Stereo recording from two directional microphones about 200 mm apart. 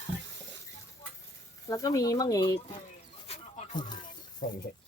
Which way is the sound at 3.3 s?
25° left (ahead or behind).